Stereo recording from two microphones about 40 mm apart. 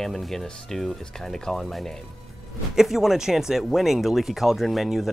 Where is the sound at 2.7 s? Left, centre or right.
Centre.